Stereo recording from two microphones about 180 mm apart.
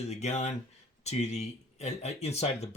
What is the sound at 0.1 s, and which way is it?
Speech, 40° left (ahead or behind).